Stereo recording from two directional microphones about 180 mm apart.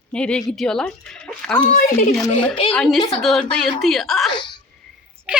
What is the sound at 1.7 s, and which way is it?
Speech, 55° left (ahead or behind).